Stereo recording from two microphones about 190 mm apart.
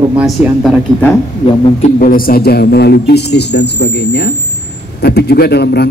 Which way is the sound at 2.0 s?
50° left (ahead or behind).